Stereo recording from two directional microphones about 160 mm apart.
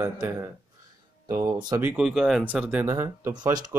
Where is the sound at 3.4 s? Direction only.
25° right (ahead or behind).